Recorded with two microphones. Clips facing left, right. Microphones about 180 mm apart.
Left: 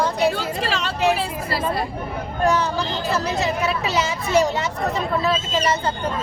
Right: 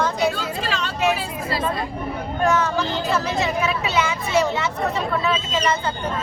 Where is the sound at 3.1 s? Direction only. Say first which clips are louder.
Left 1 dB; 35° left (ahead or behind).